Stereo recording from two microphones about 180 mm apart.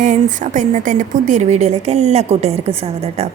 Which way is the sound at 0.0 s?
45° right (ahead or behind).